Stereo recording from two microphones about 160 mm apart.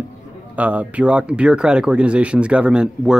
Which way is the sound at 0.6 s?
10° right (ahead or behind).